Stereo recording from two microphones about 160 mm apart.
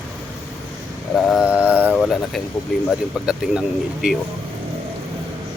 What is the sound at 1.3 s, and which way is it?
Mantra, 5° right (ahead or behind).